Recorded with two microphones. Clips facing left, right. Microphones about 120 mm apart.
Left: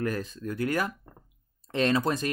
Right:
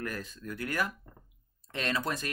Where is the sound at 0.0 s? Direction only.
25° left (ahead or behind).